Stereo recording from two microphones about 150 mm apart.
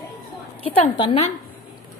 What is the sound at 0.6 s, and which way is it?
Speech, 35° left (ahead or behind).